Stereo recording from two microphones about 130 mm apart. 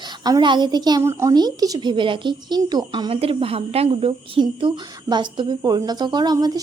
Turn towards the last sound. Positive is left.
turn(degrees=-30)  # may be behind; listen again after turning